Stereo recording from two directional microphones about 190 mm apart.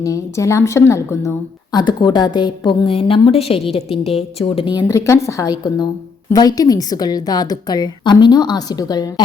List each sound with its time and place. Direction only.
0.0 s a woman's voice: 15° left (ahead or behind)